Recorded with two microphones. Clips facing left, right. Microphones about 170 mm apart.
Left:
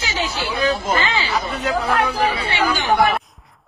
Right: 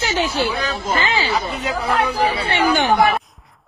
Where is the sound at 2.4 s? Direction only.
60° right (ahead or behind).